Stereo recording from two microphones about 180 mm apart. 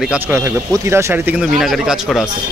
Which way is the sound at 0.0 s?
5° right (ahead or behind).